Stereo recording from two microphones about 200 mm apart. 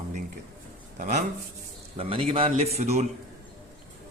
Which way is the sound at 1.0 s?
40° right (ahead or behind).